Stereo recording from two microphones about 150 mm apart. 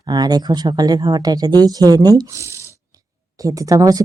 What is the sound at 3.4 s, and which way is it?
Speech, 20° right (ahead or behind).